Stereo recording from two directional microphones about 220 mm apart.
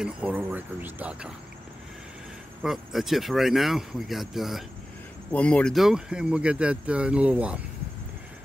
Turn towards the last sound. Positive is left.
turn(degrees=-5)  # may be behind; listen again after turning